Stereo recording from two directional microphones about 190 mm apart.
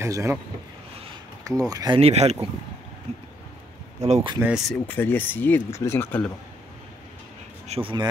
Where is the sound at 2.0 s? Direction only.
35° right (ahead or behind).